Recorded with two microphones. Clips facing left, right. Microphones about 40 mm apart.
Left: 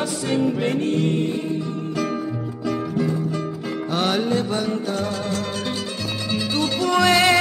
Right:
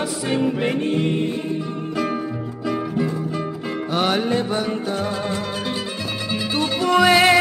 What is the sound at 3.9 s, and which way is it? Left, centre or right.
Music, centre.